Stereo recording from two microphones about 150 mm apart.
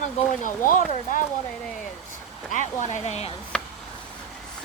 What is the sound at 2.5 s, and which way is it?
Speech, 55° left (ahead or behind).